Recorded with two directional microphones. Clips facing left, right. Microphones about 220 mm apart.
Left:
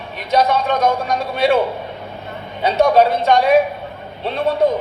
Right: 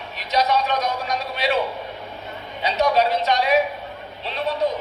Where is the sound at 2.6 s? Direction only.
50° left (ahead or behind).